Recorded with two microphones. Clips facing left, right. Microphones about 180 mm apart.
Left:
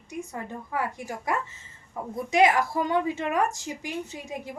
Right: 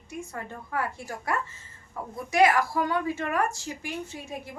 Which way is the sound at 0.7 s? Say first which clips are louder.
Left 1 dB; 15° left (ahead or behind).